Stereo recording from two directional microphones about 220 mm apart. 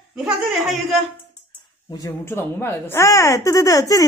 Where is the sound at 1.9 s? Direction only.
15° left (ahead or behind).